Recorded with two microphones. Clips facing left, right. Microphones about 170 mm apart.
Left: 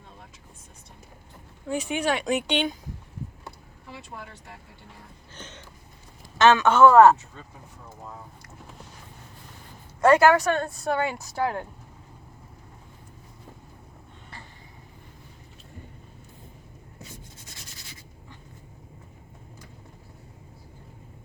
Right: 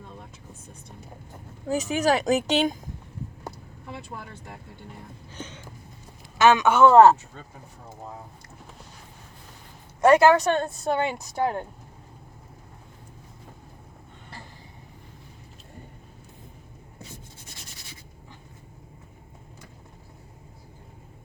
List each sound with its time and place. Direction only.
1.6 s speech: 40° right (ahead or behind)
5.3 s a sound: 10° right (ahead or behind)
6.4 s a man's voice: 10° right (ahead or behind)
6.9 s speech: 25° right (ahead or behind)
10.0 s speech: 20° right (ahead or behind)